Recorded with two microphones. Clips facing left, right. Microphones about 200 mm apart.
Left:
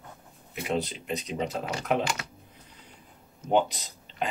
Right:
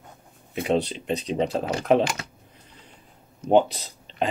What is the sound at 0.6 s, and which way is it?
Speech, 30° right (ahead or behind).